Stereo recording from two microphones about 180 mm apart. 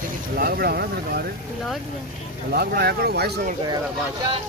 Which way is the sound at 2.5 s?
60° right (ahead or behind).